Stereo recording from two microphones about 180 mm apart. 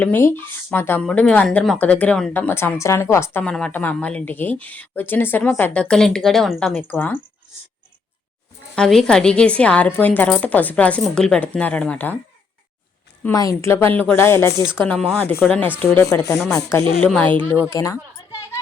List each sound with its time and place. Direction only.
0.0 s speech: 10° left (ahead or behind)
8.7 s speech: 5° left (ahead or behind)
13.2 s speech: 20° left (ahead or behind)
17.7 s a sound: 15° left (ahead or behind)